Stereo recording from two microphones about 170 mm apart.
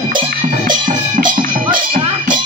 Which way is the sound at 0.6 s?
50° right (ahead or behind).